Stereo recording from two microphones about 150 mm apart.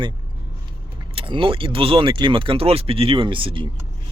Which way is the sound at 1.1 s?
35° right (ahead or behind).